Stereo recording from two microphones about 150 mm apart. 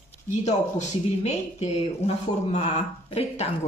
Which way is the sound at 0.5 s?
50° left (ahead or behind).